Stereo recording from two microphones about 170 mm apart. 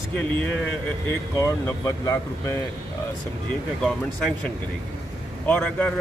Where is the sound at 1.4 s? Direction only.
15° left (ahead or behind).